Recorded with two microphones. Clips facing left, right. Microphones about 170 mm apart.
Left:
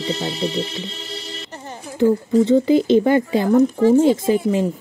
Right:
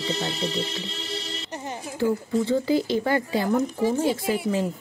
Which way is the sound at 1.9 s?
20° left (ahead or behind).